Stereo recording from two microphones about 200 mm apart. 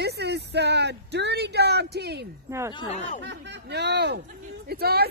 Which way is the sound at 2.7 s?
35° left (ahead or behind).